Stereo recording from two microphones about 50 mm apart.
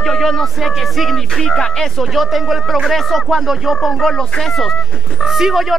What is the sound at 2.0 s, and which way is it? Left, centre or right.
Speech, centre.